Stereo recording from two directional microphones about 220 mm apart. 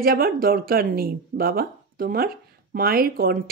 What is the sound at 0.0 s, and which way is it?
Speech, 40° right (ahead or behind).